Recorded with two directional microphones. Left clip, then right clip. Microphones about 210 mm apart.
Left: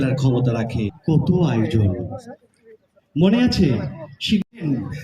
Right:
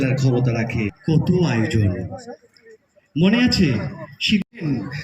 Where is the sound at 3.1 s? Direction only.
40° left (ahead or behind).